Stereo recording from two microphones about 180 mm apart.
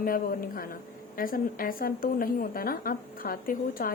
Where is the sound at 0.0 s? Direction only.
55° left (ahead or behind).